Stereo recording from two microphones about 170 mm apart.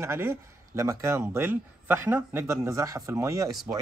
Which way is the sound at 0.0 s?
15° right (ahead or behind).